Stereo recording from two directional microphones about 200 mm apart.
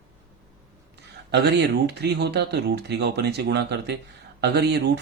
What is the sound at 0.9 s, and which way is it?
Speech, 55° right (ahead or behind).